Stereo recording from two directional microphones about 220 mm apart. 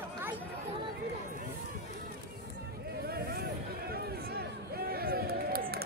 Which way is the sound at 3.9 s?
45° right (ahead or behind).